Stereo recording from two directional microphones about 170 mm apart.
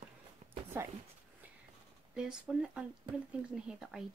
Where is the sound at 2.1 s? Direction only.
5° right (ahead or behind).